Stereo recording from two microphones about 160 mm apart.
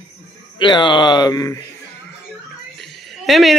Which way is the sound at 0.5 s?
30° left (ahead or behind).